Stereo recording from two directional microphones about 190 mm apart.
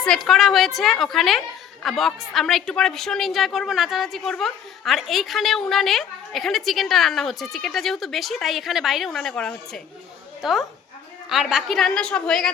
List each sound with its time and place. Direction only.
0.0 s a woman's voice: centre (ahead or behind)